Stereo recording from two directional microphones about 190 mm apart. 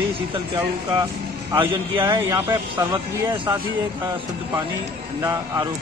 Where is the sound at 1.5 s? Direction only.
25° right (ahead or behind).